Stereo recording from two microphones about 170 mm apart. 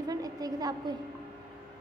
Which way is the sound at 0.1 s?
20° right (ahead or behind).